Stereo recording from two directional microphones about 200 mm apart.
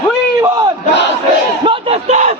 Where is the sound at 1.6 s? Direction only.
30° right (ahead or behind).